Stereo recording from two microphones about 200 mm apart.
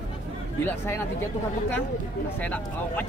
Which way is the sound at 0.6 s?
10° left (ahead or behind).